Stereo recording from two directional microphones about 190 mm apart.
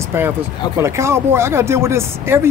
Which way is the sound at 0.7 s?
15° right (ahead or behind).